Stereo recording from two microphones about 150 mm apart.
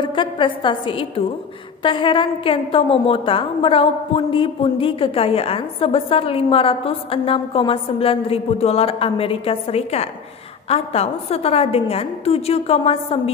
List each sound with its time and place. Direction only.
0.0 s a woman's voice: 35° left (ahead or behind)